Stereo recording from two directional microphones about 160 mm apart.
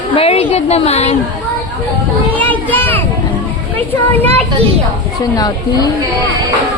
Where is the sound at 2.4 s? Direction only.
10° left (ahead or behind).